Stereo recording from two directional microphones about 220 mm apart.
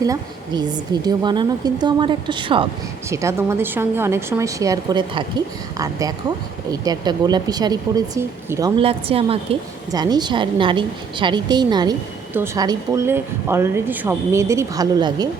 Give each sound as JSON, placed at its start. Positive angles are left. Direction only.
{"t": 0.0, "sound": "a woman's voice", "side_deg": -20}
{"t": 8.8, "sound": "a woman's voice", "side_deg": -25}